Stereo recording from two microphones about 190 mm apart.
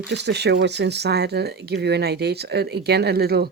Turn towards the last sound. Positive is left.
turn(degrees=-55)  # may be behind; listen again after turning